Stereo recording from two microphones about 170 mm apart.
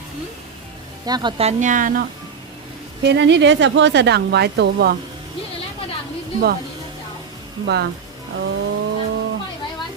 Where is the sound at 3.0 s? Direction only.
90° right.